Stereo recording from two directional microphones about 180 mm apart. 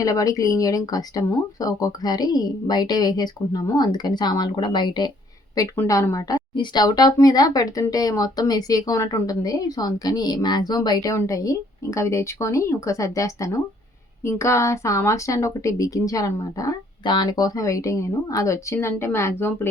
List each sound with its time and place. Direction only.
0.0 s speech: 20° left (ahead or behind)